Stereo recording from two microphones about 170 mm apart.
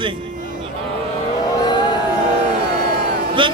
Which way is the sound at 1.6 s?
25° left (ahead or behind).